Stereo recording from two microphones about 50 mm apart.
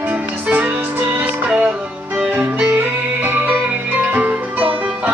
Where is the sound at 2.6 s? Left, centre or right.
Right.